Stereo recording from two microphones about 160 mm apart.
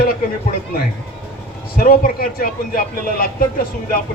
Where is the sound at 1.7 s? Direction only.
65° left (ahead or behind).